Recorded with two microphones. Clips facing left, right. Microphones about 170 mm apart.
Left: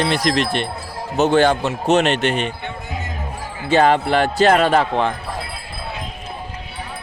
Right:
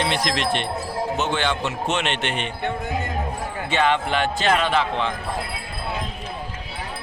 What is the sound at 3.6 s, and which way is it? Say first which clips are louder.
Speech: left 7 dB; 40° left (ahead or behind).